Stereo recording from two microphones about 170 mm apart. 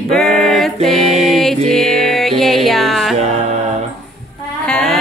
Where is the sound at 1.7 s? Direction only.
5° left (ahead or behind).